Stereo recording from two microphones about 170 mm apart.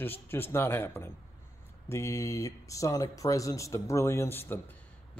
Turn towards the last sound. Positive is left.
turn(degrees=15)  # may be behind; listen again after turning